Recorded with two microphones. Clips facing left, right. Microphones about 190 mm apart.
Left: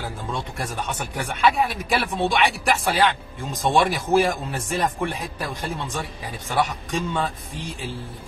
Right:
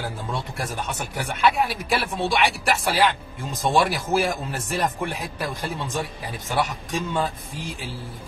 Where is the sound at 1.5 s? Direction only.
Centre (ahead or behind).